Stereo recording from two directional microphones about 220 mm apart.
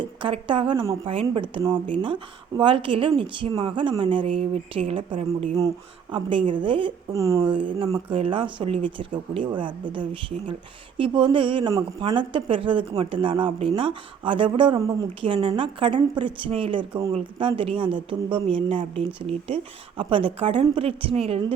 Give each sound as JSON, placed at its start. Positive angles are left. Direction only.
{"t": 0.0, "sound": "speech", "side_deg": -20}